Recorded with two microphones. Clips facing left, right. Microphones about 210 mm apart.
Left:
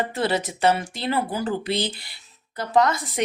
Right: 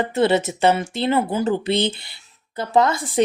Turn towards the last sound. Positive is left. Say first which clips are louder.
# right 2 dB
turn(degrees=-30)  # may be behind; listen again after turning